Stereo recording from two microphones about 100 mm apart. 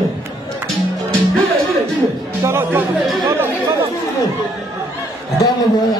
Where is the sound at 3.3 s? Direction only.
25° right (ahead or behind).